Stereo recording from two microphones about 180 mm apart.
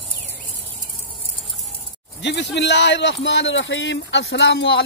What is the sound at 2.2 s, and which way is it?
Speech, 75° left (ahead or behind).